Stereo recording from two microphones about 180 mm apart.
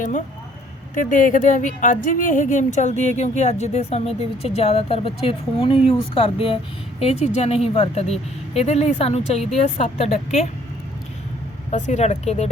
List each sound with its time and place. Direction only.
0.9 s speech: 45° left (ahead or behind)
11.7 s speech: 40° left (ahead or behind)